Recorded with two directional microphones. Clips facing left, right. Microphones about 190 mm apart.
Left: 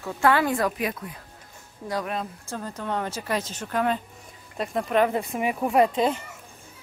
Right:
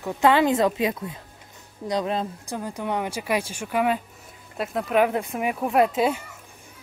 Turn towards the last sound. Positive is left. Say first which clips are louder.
# even
turn(degrees=-5)  # may be behind; listen again after turning